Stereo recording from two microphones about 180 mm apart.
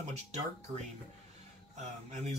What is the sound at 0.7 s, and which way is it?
Speech, 30° right (ahead or behind).